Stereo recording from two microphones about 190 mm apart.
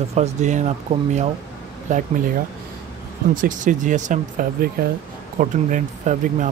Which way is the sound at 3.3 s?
45° right (ahead or behind).